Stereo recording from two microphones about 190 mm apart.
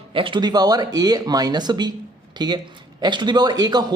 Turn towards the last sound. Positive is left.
turn(degrees=-20)  # may be behind; listen again after turning